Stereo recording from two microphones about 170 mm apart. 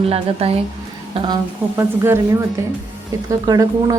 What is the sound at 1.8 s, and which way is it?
Speech, 15° right (ahead or behind).